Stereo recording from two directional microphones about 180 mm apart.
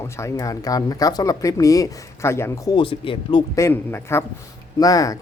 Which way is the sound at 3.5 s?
15° left (ahead or behind).